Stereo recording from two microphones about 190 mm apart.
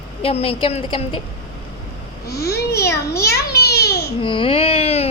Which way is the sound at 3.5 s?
60° left (ahead or behind).